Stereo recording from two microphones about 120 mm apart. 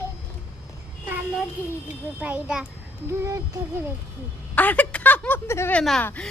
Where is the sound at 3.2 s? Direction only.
25° right (ahead or behind).